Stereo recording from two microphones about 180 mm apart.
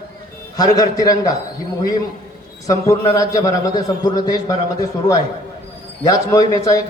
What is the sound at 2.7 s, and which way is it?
Speech, 15° left (ahead or behind).